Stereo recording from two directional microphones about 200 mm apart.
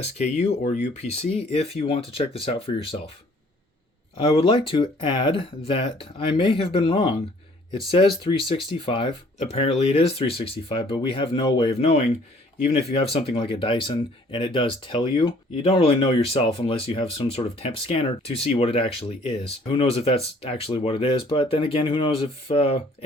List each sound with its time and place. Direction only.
0.0 s speech: 35° left (ahead or behind)
4.2 s speech: 30° left (ahead or behind)
13.1 s speech: 30° left (ahead or behind)